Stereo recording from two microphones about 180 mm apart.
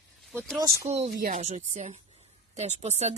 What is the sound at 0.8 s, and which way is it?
Speech, 35° right (ahead or behind).